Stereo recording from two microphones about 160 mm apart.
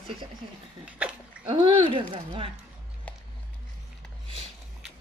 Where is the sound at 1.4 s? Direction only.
30° right (ahead or behind).